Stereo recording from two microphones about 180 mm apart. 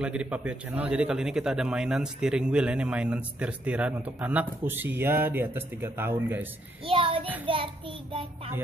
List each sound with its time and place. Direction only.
0.0 s a man's voice: 5° right (ahead or behind)
6.9 s child singing: 30° right (ahead or behind)
7.4 s a child's voice: 30° right (ahead or behind)